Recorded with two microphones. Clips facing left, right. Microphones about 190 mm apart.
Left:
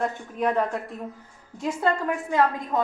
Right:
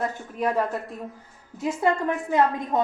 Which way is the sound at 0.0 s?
5° right (ahead or behind).